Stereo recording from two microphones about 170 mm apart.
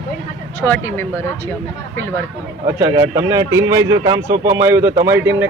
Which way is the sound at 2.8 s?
25° right (ahead or behind).